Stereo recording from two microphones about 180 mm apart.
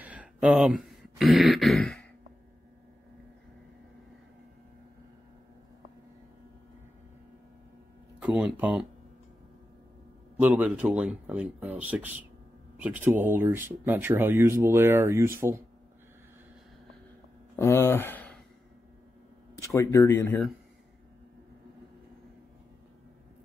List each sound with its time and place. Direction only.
0.0 s speech: 10° right (ahead or behind)
8.2 s speech: 5° right (ahead or behind)
10.4 s speech: 10° right (ahead or behind)
17.6 s speech: 15° left (ahead or behind)
19.6 s speech: 15° left (ahead or behind)